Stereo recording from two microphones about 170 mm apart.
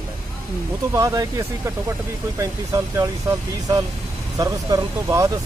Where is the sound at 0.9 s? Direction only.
20° right (ahead or behind).